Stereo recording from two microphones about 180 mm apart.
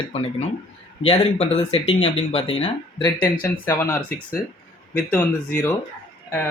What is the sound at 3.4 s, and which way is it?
Speech, 15° left (ahead or behind).